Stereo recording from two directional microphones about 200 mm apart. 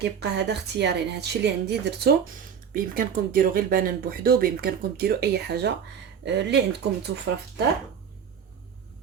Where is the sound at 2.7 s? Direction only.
45° right (ahead or behind); by 7.4 s 65° right (ahead or behind).